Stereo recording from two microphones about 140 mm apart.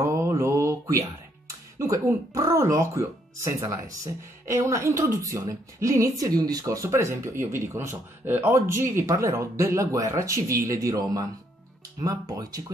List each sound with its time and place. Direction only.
0.0 s mantra: 20° right (ahead or behind)
1.8 s speech: 25° right (ahead or behind)